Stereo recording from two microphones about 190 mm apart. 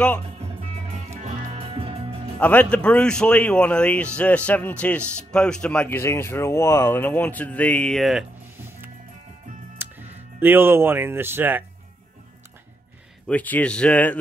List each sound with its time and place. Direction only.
1.2 s music: 30° right (ahead or behind)
2.3 s speech: 10° left (ahead or behind)
9.8 s speech: 10° right (ahead or behind)
13.3 s speech: 10° left (ahead or behind)